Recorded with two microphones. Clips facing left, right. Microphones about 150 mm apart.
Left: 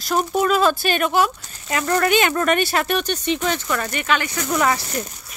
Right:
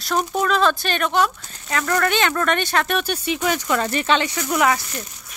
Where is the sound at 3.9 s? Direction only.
30° right (ahead or behind).